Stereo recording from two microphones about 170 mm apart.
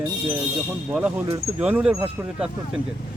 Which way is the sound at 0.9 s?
10° right (ahead or behind).